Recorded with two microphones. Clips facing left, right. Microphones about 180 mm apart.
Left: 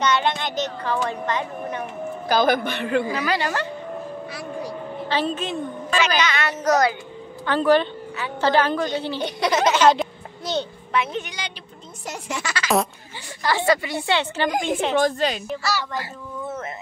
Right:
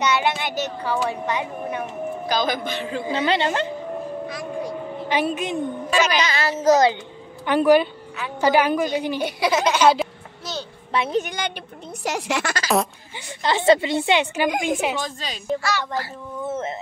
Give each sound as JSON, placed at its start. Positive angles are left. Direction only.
{"t": 0.0, "sound": "a woman's voice", "side_deg": -10}
{"t": 2.2, "sound": "a man's voice", "side_deg": 50}
{"t": 3.1, "sound": "a woman's voice", "side_deg": -25}
{"t": 4.3, "sound": "a sound", "side_deg": 5}
{"t": 5.0, "sound": "a woman's voice", "side_deg": -15}
{"t": 5.9, "sound": "a woman's voice", "side_deg": -35}
{"t": 7.4, "sound": "a woman's voice", "side_deg": -15}
{"t": 10.9, "sound": "a woman's voice", "side_deg": -35}
{"t": 12.0, "sound": "speech", "side_deg": -80}
{"t": 12.4, "sound": "a woman's voice", "side_deg": -40}
{"t": 13.4, "sound": "a woman's voice", "side_deg": -20}
{"t": 15.0, "sound": "a man's voice", "side_deg": 60}